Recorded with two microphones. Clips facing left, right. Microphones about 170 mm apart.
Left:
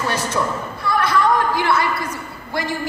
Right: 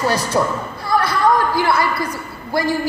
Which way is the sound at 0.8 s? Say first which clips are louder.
Right 1 dB; 35° right (ahead or behind).